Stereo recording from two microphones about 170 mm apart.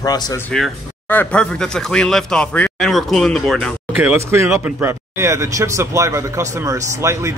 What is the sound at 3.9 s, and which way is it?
Speech, 10° right (ahead or behind).